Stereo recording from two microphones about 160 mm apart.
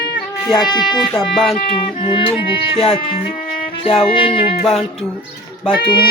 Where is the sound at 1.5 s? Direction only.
35° left (ahead or behind).